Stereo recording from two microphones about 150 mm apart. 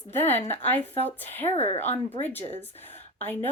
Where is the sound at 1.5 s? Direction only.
45° left (ahead or behind).